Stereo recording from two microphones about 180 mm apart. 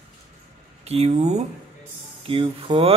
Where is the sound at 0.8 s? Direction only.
35° right (ahead or behind).